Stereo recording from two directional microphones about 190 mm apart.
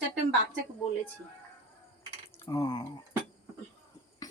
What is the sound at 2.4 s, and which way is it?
Speech, 20° left (ahead or behind).